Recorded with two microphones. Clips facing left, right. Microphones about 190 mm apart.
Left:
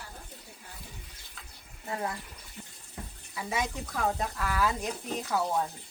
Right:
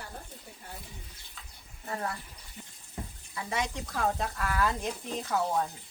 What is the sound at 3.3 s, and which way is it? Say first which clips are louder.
Speech: left 1 dB; 5° left (ahead or behind).